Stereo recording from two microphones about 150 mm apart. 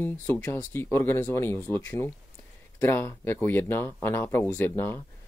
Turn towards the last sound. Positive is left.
turn(degrees=15)  # may be behind; listen again after turning